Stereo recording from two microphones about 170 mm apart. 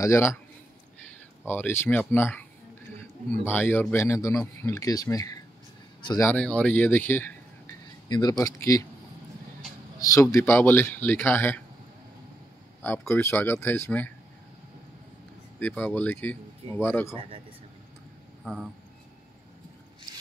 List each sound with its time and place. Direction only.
0.0 s a man's voice: 15° left (ahead or behind)
1.5 s a man's voice: 15° left (ahead or behind)
8.1 s speech: 20° left (ahead or behind)
10.3 s a man's voice: 15° left (ahead or behind)
12.8 s a man's voice: 10° left (ahead or behind)
15.6 s a man's voice: 10° left (ahead or behind)
18.4 s speech: centre (ahead or behind)